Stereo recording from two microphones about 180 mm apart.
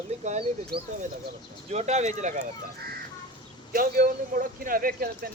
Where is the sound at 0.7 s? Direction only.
60° right (ahead or behind).